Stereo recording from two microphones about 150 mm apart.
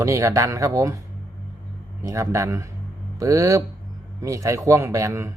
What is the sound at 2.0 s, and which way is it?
A man's voice, 20° right (ahead or behind).